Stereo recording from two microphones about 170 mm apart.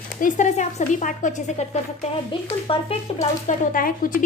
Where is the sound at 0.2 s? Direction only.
45° left (ahead or behind).